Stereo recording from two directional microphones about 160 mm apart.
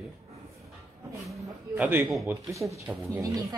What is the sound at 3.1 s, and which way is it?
Speech, 20° right (ahead or behind).